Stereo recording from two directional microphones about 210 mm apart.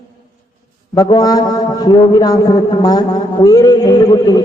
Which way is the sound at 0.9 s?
20° left (ahead or behind).